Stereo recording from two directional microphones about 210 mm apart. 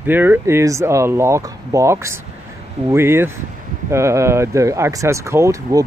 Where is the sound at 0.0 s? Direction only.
10° right (ahead or behind).